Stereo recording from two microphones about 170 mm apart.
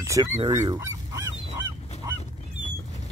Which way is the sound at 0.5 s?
20° right (ahead or behind).